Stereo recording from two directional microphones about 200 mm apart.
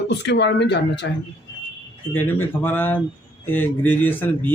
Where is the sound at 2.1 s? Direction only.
10° left (ahead or behind).